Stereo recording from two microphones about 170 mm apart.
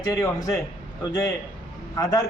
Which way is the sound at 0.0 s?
20° left (ahead or behind).